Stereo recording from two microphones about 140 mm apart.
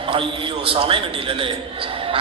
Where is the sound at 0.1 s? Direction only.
40° right (ahead or behind).